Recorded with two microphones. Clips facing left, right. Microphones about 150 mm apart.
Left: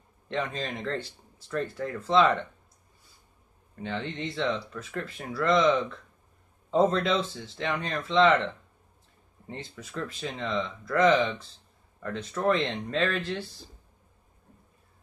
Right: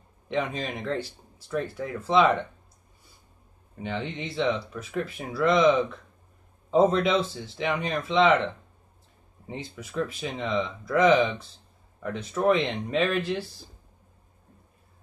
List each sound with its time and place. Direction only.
0.3 s speech: 15° right (ahead or behind)
3.7 s speech: 15° right (ahead or behind)
9.5 s speech: 10° right (ahead or behind)